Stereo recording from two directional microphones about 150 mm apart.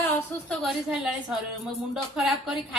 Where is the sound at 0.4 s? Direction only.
Centre (ahead or behind).